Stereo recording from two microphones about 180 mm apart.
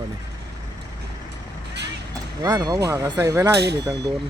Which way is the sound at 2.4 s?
20° right (ahead or behind).